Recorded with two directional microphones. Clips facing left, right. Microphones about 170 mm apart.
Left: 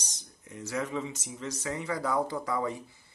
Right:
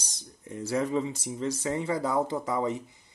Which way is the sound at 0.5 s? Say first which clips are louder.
Right 5 dB; 30° right (ahead or behind).